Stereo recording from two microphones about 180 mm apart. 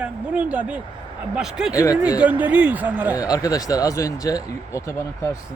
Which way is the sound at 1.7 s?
20° left (ahead or behind).